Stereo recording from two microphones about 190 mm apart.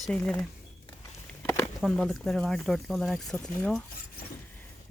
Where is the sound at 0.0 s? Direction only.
5° left (ahead or behind).